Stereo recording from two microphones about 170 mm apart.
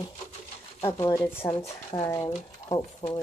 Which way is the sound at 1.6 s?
25° left (ahead or behind).